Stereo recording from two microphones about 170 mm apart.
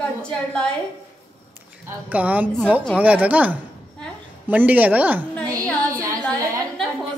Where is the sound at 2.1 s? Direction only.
10° right (ahead or behind).